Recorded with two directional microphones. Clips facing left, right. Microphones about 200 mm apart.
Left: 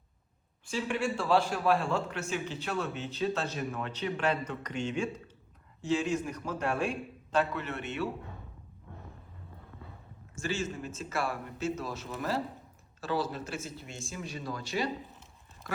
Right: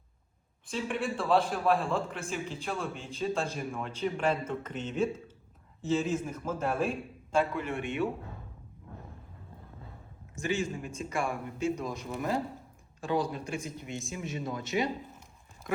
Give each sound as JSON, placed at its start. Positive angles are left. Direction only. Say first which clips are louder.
{"t": 0.6, "sound": "a man's voice", "louder": "left 1 dB", "side_deg": 0}
{"t": 10.3, "sound": "speech", "louder": "right 2 dB", "side_deg": -15}